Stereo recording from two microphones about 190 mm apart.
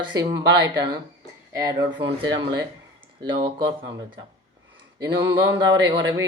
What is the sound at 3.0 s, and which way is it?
Speech, 25° right (ahead or behind).